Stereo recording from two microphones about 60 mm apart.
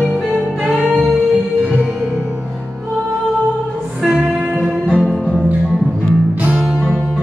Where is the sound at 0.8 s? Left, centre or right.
Centre.